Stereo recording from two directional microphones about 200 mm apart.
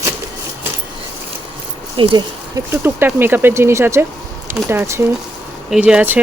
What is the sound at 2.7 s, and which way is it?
Speech, 10° right (ahead or behind).